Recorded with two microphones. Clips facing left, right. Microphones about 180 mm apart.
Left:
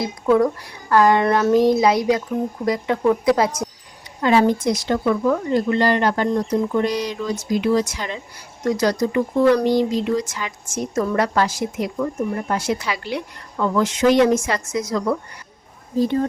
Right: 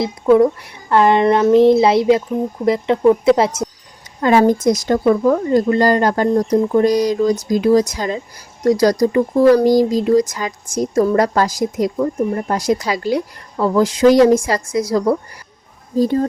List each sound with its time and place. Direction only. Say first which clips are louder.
0.0 s a child's voice: right 5 dB; 25° right (ahead or behind)
4.2 s speech: right 4 dB; 45° right (ahead or behind)